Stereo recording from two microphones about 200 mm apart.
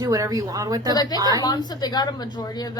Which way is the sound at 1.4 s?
20° left (ahead or behind).